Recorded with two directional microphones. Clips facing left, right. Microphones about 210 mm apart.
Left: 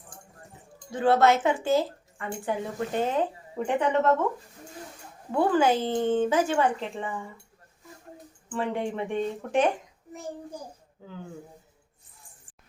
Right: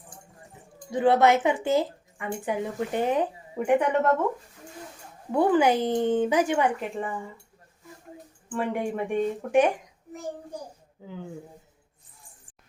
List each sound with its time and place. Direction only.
0.9 s speech: 15° right (ahead or behind)
5.3 s speech: 20° right (ahead or behind)
8.4 s speech: 10° right (ahead or behind)
11.0 s speech: 15° right (ahead or behind)